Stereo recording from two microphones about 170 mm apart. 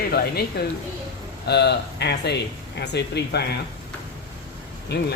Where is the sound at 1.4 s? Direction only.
75° left (ahead or behind).